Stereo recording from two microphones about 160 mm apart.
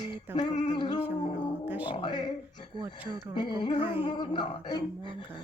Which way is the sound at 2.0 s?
30° left (ahead or behind).